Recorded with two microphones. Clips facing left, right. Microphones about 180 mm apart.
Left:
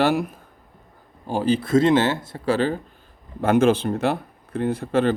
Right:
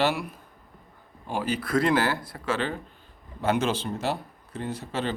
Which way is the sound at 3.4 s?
50° left (ahead or behind).